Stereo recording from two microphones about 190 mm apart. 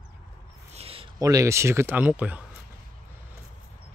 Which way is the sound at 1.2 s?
15° right (ahead or behind).